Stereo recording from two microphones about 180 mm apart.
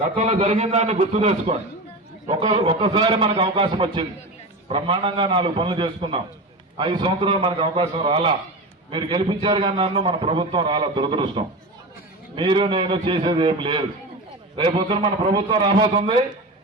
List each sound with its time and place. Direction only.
0.2 s a man's voice: 35° right (ahead or behind)